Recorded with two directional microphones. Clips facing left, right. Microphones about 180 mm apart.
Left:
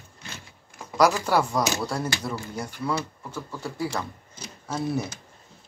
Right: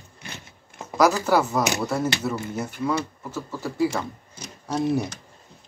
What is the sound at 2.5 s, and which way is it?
Speech, 5° right (ahead or behind).